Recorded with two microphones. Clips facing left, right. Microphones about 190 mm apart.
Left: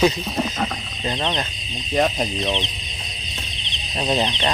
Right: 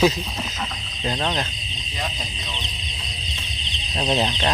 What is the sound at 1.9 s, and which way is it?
Speech, 70° left (ahead or behind).